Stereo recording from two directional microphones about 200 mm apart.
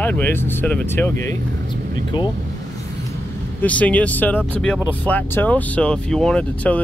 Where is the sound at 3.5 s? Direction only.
5° left (ahead or behind).